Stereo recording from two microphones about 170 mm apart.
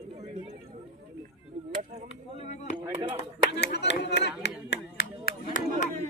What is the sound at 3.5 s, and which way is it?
Speech, 90° left.